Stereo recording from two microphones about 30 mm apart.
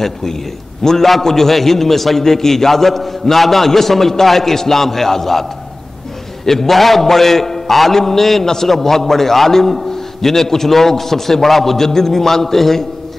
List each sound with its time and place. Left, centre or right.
0.0 s a man's voice: centre